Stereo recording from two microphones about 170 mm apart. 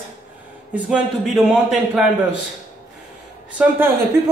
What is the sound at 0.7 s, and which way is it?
A man's voice, 5° right (ahead or behind).